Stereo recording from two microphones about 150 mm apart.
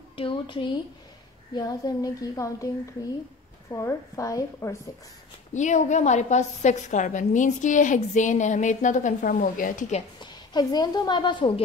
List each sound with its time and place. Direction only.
0.1 s a woman's voice: 35° left (ahead or behind)
3.7 s a woman's voice: 20° left (ahead or behind)
5.5 s a woman's voice: 55° left (ahead or behind)
10.2 s a woman's voice: 25° left (ahead or behind)